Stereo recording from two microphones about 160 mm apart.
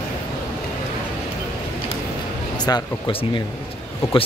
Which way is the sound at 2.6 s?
30° left (ahead or behind).